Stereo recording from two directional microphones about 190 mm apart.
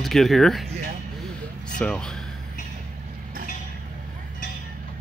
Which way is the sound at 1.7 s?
5° left (ahead or behind).